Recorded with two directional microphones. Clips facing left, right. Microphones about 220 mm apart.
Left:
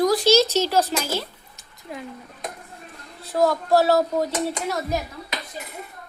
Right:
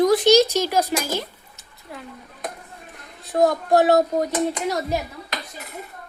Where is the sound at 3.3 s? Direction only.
20° right (ahead or behind).